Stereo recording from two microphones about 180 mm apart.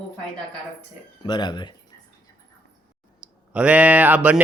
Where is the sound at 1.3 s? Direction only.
25° left (ahead or behind).